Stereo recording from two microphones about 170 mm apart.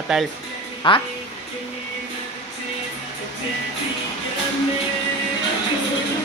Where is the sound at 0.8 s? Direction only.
30° left (ahead or behind).